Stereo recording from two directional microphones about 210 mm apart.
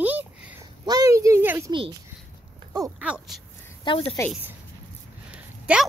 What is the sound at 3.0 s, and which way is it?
Speech, 5° right (ahead or behind).